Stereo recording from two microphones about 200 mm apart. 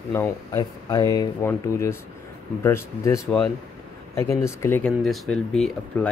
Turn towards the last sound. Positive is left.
turn(degrees=0)  # may be behind; listen again after turning